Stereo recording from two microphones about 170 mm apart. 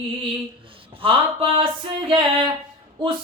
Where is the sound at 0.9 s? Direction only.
30° right (ahead or behind).